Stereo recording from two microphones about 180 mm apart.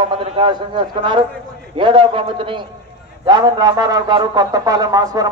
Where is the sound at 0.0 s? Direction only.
25° right (ahead or behind).